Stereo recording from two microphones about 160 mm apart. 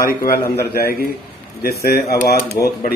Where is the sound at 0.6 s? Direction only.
75° left (ahead or behind).